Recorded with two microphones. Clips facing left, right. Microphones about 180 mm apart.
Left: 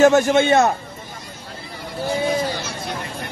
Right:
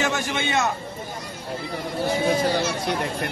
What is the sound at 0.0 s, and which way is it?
Speech, 45° left (ahead or behind).